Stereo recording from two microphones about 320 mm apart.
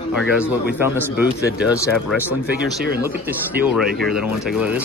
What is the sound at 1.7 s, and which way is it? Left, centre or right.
Speech, centre.